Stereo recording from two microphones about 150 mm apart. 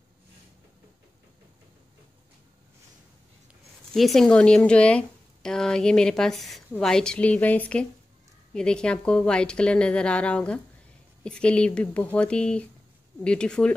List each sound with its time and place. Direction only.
3.9 s a woman's voice: centre (ahead or behind)